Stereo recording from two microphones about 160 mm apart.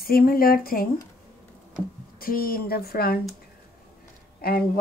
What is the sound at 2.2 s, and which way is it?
Speech, 65° left (ahead or behind).